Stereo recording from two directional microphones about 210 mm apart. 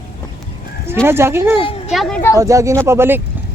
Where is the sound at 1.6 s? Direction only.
25° left (ahead or behind).